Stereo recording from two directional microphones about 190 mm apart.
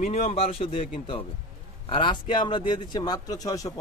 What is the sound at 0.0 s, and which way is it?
Speech, 35° left (ahead or behind).